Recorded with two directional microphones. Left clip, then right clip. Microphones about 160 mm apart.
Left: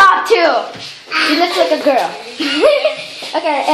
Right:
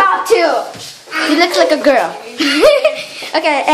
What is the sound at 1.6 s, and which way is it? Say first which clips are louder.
Speech: right 2 dB; 20° right (ahead or behind).